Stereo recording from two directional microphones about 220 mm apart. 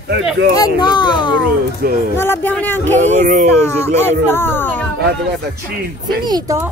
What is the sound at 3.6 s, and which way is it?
Speech, 10° left (ahead or behind).